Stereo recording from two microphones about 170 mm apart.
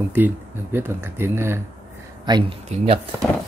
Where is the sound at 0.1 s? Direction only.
10° right (ahead or behind).